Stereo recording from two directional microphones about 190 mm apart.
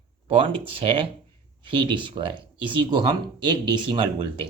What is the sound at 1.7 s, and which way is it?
Speech, 25° right (ahead or behind).